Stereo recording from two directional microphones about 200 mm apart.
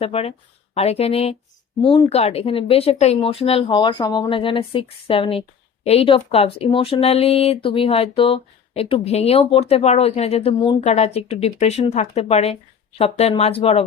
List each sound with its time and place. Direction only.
0.0 s speech: 30° left (ahead or behind)